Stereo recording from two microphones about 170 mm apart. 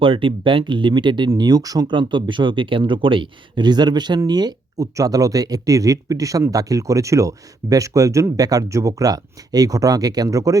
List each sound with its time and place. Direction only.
0.0 s speech: 30° right (ahead or behind)